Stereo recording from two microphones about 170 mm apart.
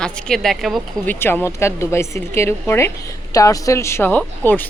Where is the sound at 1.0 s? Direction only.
10° left (ahead or behind).